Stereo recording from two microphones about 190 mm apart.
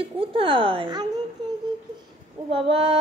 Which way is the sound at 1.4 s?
20° right (ahead or behind).